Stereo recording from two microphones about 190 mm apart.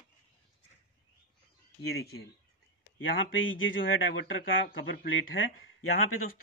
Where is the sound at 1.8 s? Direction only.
55° left (ahead or behind).